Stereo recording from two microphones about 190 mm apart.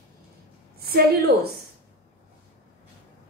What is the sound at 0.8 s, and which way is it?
Speech, 55° right (ahead or behind).